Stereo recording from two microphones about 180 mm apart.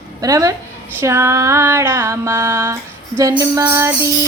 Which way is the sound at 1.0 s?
15° right (ahead or behind).